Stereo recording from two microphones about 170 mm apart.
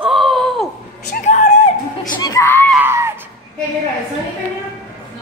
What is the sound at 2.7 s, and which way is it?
Screaming, 15° right (ahead or behind).